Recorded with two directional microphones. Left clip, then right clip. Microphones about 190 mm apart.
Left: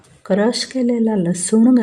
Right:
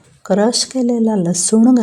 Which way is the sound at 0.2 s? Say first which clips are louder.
Right 3 dB; 25° right (ahead or behind).